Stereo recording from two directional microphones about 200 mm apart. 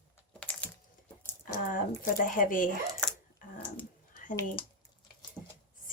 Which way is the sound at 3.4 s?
40° left (ahead or behind).